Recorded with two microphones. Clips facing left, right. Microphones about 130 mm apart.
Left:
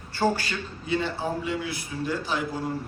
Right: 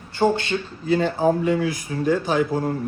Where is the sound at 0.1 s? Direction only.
20° right (ahead or behind).